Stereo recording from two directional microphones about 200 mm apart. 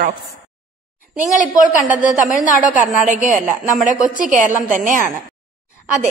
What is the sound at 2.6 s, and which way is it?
A woman's voice, 40° right (ahead or behind).